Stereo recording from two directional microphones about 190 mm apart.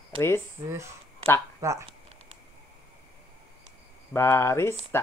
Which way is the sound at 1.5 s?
15° right (ahead or behind).